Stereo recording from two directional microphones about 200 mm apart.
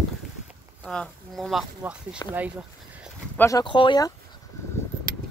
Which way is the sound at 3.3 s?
15° left (ahead or behind).